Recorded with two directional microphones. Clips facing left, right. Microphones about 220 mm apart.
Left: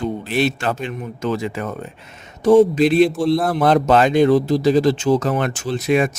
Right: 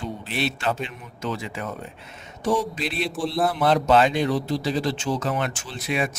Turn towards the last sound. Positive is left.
turn(degrees=45)  # may be behind; listen again after turning